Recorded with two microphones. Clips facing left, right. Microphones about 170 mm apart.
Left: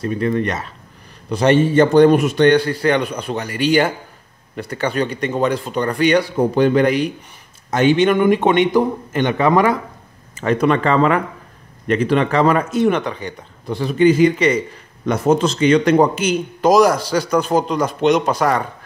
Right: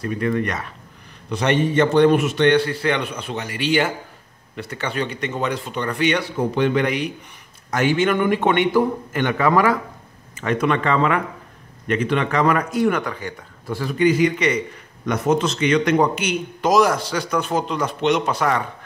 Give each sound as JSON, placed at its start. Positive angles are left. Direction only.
{"t": 0.0, "sound": "a man's voice", "side_deg": 30}
{"t": 7.7, "sound": "a man's voice", "side_deg": 20}